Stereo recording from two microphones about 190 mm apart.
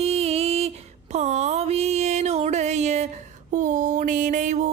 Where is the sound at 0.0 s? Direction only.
35° right (ahead or behind).